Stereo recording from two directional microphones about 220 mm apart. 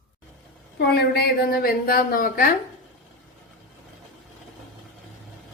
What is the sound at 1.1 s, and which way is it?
Speech, 45° left (ahead or behind).